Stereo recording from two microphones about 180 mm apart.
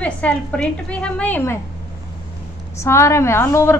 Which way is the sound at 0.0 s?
5° left (ahead or behind).